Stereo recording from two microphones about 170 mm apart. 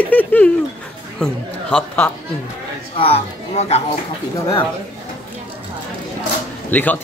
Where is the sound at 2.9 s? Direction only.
35° left (ahead or behind).